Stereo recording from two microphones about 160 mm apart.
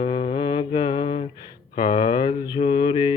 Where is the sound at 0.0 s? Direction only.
35° left (ahead or behind).